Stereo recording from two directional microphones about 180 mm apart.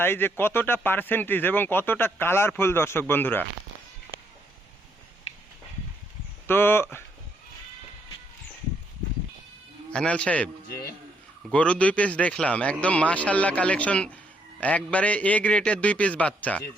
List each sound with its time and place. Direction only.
0.0 s speech: 10° left (ahead or behind)
5.3 s a sound: 35° left (ahead or behind)
6.5 s speech: 10° left (ahead or behind)
9.9 s speech: 5° left (ahead or behind)
11.5 s speech: 5° left (ahead or behind)